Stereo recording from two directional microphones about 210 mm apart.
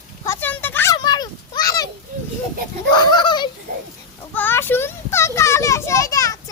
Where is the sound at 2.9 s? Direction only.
20° left (ahead or behind).